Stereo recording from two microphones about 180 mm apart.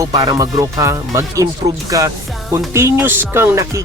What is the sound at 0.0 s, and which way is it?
Speech, 20° right (ahead or behind).